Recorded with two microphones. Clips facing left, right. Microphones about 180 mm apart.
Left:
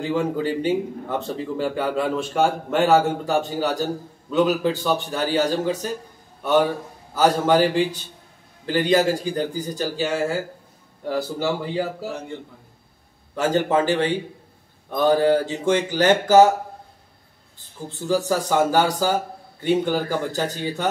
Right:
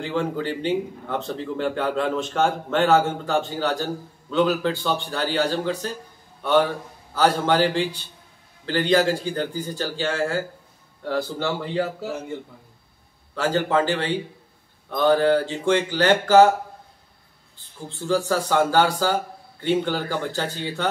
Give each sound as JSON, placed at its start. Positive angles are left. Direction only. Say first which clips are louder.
{"t": 0.0, "sound": "a man's voice", "louder": "left 3 dB", "side_deg": 10}
{"t": 13.3, "sound": "a man's voice", "louder": "left 2 dB", "side_deg": 15}
{"t": 18.0, "sound": "a man's voice", "louder": "left 1 dB", "side_deg": 10}